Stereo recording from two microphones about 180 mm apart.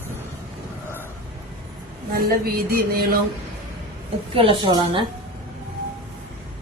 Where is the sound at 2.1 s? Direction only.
55° right (ahead or behind).